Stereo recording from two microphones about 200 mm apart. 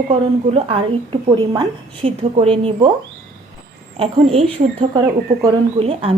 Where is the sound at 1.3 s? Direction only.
25° right (ahead or behind).